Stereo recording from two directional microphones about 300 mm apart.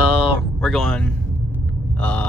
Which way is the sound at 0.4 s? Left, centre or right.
Centre.